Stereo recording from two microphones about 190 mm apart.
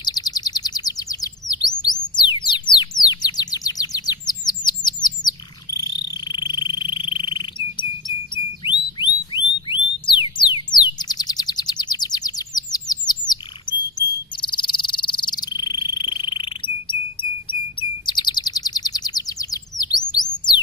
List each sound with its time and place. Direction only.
0.0 s chirp: 20° left (ahead or behind)
5.2 s frog: 20° left (ahead or behind)
7.3 s insect: 25° left (ahead or behind)
9.0 s a sound: 25° left (ahead or behind)
13.3 s chirp: 20° left (ahead or behind)